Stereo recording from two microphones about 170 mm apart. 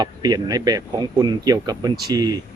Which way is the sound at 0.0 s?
25° right (ahead or behind).